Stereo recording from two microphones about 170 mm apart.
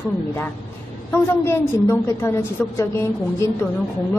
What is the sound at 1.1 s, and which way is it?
A woman's voice, 15° left (ahead or behind).